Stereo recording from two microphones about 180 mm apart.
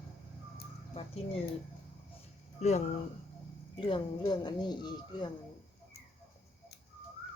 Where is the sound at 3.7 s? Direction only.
30° left (ahead or behind).